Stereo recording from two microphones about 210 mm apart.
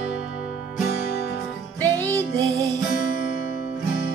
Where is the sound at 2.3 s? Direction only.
15° right (ahead or behind).